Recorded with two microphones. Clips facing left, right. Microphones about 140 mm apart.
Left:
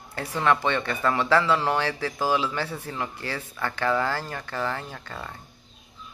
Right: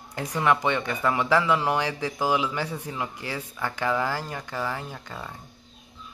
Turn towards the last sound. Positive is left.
turn(degrees=-10)  # may be behind; listen again after turning